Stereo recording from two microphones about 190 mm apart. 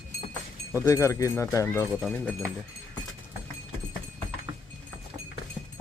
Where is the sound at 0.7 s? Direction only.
15° left (ahead or behind).